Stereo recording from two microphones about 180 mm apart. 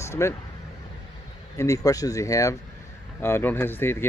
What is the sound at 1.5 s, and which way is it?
Speech, 15° left (ahead or behind).